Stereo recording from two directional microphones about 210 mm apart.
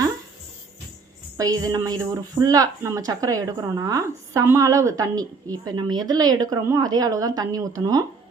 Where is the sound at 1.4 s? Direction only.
15° right (ahead or behind).